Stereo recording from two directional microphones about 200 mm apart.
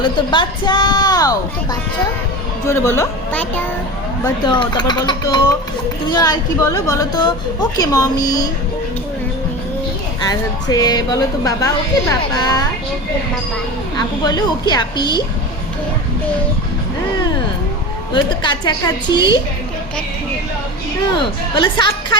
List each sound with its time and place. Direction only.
0.0 s a woman's voice: 25° left (ahead or behind)
2.6 s a woman's voice: 15° left (ahead or behind)
4.2 s a woman's voice: 25° left (ahead or behind)
10.2 s a woman's voice: 20° left (ahead or behind)
14.3 s a woman's voice: 20° left (ahead or behind)
18.1 s a woman's voice: 25° left (ahead or behind)
21.1 s a woman's voice: 25° left (ahead or behind)